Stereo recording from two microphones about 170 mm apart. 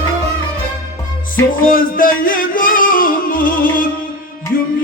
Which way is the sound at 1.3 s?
55° left (ahead or behind).